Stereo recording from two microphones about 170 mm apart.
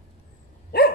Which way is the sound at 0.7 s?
65° left (ahead or behind).